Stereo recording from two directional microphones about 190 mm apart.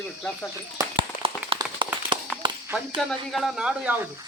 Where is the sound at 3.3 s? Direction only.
Centre (ahead or behind).